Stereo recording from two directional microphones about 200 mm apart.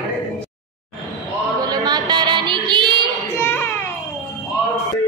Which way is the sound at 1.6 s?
20° right (ahead or behind).